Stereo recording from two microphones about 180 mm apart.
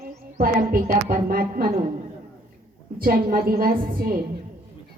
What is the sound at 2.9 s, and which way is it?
Speech, 50° right (ahead or behind).